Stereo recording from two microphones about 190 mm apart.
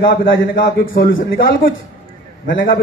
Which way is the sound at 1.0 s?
60° left (ahead or behind).